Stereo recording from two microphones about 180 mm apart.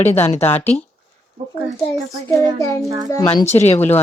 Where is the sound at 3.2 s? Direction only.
35° left (ahead or behind).